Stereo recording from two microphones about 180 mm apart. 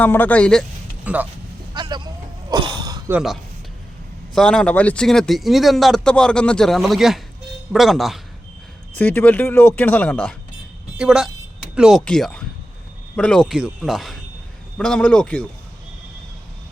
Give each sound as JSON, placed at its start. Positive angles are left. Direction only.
{"t": 0.0, "sound": "speech", "side_deg": 10}
{"t": 1.0, "sound": "speech", "side_deg": -10}
{"t": 1.7, "sound": "a sound", "side_deg": -25}
{"t": 3.1, "sound": "speech", "side_deg": -5}
{"t": 4.4, "sound": "speech", "side_deg": 5}
{"t": 9.0, "sound": "speech", "side_deg": 10}
{"t": 10.9, "sound": "speech", "side_deg": -5}